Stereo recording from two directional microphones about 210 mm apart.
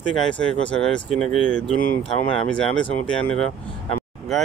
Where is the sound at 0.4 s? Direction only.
5° left (ahead or behind).